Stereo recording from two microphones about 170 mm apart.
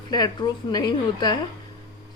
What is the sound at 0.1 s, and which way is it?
Speech, 25° left (ahead or behind).